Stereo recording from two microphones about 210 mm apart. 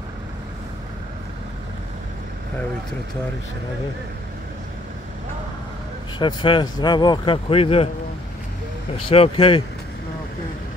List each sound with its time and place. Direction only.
6.1 s speech: 25° left (ahead or behind)
8.9 s speech: 25° left (ahead or behind)